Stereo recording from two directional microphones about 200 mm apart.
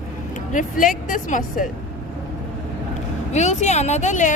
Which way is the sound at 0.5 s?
40° left (ahead or behind).